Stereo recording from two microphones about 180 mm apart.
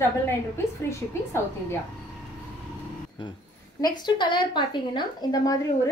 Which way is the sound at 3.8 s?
25° left (ahead or behind).